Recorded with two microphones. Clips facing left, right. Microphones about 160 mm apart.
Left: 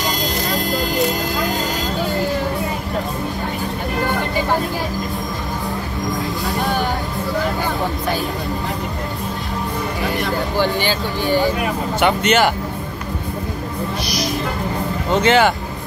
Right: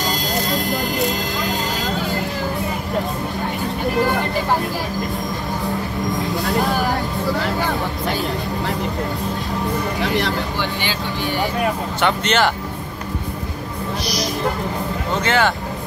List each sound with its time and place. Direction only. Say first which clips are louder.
0.5 s vehicle: left 1 dB; centre (ahead or behind)
10.6 s speech: left 5 dB; 40° left (ahead or behind)
12.0 s speech: left 3 dB; 10° left (ahead or behind)
15.2 s speech: left 4 dB; 20° left (ahead or behind)